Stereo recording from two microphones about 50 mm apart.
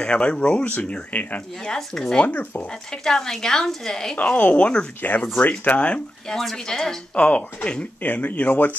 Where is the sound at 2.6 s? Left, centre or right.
Centre.